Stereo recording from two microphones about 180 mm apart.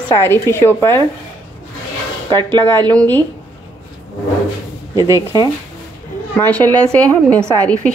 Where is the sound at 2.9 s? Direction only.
10° left (ahead or behind).